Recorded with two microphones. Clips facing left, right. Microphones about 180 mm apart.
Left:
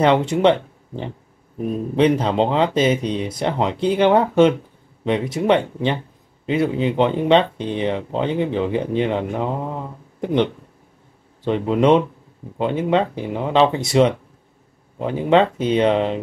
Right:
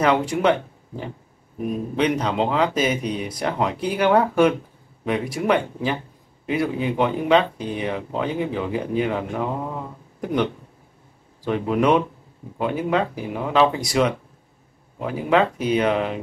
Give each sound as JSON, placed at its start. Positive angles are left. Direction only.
{"t": 0.0, "sound": "speech", "side_deg": 25}